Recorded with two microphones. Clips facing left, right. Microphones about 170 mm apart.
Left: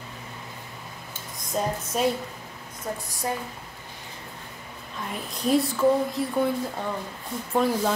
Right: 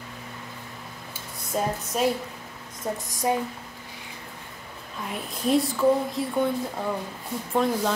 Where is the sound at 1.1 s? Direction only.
5° right (ahead or behind).